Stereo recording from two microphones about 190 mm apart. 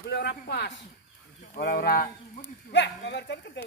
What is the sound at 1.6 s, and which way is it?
Speech, 50° left (ahead or behind).